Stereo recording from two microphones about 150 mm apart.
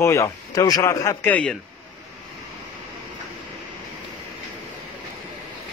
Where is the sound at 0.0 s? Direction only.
20° left (ahead or behind).